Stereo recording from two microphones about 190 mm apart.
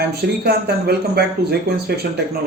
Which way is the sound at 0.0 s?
55° right (ahead or behind).